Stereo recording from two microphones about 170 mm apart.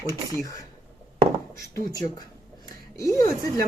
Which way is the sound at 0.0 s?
20° right (ahead or behind).